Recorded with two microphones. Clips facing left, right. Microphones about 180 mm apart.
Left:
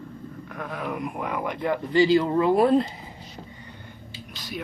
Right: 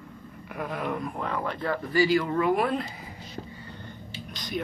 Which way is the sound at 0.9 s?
15° left (ahead or behind).